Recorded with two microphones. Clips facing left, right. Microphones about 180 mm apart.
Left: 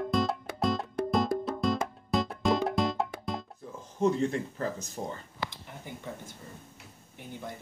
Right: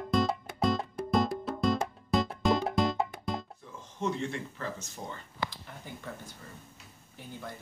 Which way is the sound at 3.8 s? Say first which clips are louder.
Left 6 dB; 40° left (ahead or behind).